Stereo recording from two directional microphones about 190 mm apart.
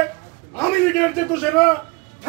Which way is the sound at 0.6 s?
5° left (ahead or behind).